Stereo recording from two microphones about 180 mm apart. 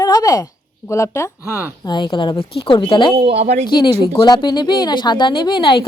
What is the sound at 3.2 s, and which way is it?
Speech, 35° right (ahead or behind).